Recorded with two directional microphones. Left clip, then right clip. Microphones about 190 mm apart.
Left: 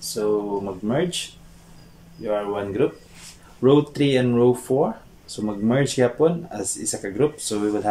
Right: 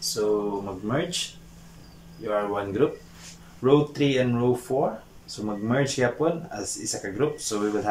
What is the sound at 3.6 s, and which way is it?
Speech, 25° left (ahead or behind).